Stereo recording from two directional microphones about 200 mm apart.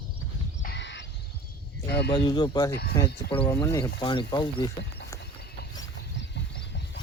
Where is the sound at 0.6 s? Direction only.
60° left (ahead or behind).